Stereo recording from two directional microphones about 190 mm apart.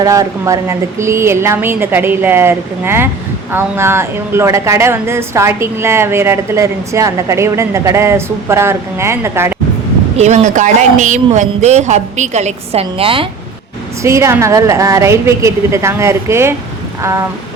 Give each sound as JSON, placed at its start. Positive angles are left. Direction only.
{"t": 0.0, "sound": "a woman's voice", "side_deg": -15}
{"t": 10.2, "sound": "speech", "side_deg": -35}
{"t": 14.0, "sound": "a woman's voice", "side_deg": -15}